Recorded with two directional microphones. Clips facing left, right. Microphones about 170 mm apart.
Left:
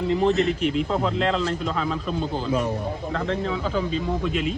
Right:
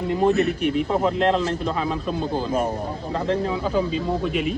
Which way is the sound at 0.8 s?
10° right (ahead or behind).